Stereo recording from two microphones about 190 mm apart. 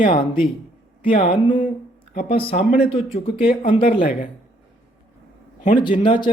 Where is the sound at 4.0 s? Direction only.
45° left (ahead or behind).